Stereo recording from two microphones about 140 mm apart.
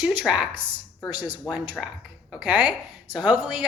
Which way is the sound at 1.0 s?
30° left (ahead or behind).